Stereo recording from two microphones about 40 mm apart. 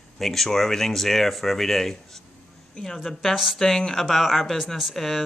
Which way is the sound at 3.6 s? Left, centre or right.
Centre.